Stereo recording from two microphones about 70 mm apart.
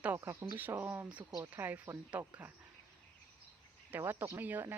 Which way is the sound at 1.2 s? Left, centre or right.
Right.